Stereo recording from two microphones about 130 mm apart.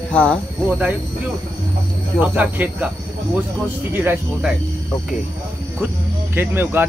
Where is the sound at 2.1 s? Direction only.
10° right (ahead or behind).